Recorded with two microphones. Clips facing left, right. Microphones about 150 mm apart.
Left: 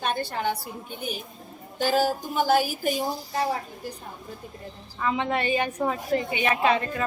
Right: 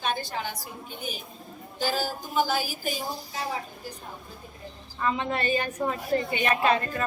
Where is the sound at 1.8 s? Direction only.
60° left (ahead or behind).